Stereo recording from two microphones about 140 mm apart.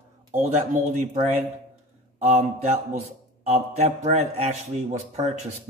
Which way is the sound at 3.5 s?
50° right (ahead or behind).